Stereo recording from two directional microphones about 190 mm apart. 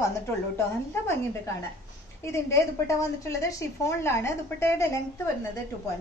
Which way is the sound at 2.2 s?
15° left (ahead or behind).